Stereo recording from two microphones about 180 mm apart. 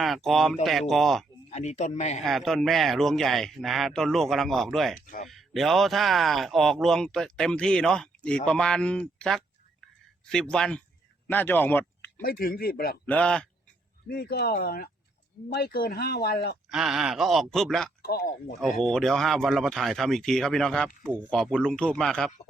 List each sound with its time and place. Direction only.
0.0 s speech: centre (ahead or behind)
1.5 s speech: 40° left (ahead or behind)
2.2 s speech: centre (ahead or behind)
4.9 s speech: 45° left (ahead or behind)
5.3 s speech: centre (ahead or behind)
12.2 s speech: 55° left (ahead or behind)
13.1 s speech: 5° left (ahead or behind)
14.1 s speech: 60° left (ahead or behind)
16.7 s speech: 5° right (ahead or behind)
18.0 s speech: 60° left (ahead or behind)
18.9 s speech: 5° left (ahead or behind)